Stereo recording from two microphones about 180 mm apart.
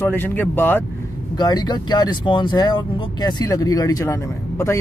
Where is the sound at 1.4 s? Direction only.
25° left (ahead or behind).